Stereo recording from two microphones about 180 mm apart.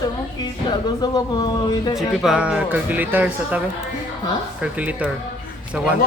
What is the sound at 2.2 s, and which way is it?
Speech, 5° right (ahead or behind).